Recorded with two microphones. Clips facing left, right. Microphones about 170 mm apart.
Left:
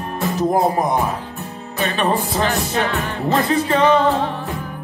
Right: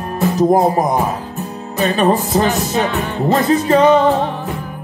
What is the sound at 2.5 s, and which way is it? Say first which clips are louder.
Music: right 3 dB; 20° right (ahead or behind).